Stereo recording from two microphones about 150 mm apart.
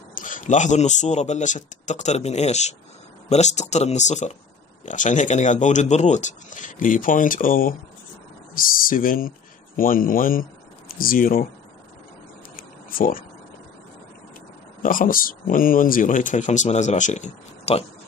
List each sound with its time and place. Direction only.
0.1 s speech: 60° left (ahead or behind)
12.5 s a sound: 70° left (ahead or behind)
14.8 s speech: 65° left (ahead or behind); by 17.8 s 45° left (ahead or behind)